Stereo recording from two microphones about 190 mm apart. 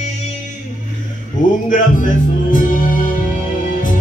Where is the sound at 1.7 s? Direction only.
45° left (ahead or behind).